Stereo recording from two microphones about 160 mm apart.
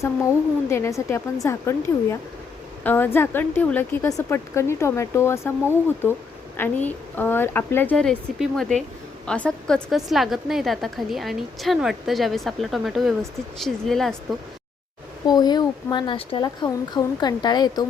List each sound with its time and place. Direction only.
0.0 s a woman's voice: 20° left (ahead or behind)
6.8 s a woman's voice: 10° left (ahead or behind)
15.3 s speech: 25° left (ahead or behind)